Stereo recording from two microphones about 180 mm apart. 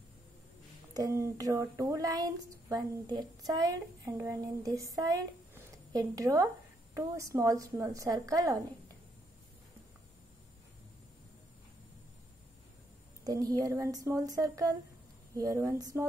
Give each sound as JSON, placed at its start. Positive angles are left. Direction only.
{"t": 0.9, "sound": "speech", "side_deg": -15}
{"t": 13.2, "sound": "speech", "side_deg": -20}